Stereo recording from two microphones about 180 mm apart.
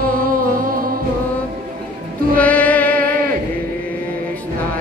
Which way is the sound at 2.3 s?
10° left (ahead or behind).